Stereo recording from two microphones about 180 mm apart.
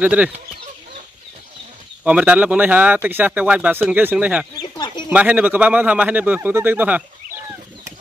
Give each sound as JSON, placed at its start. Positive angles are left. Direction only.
{"t": 0.0, "sound": "speech", "side_deg": -10}
{"t": 2.0, "sound": "speech", "side_deg": -5}
{"t": 4.6, "sound": "bird", "side_deg": 25}
{"t": 5.1, "sound": "speech", "side_deg": -10}